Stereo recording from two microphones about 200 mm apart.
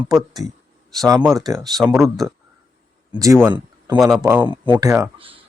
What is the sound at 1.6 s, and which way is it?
Speech, centre (ahead or behind).